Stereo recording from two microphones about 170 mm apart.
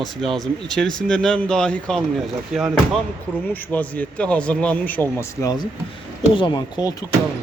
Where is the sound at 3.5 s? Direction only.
10° left (ahead or behind).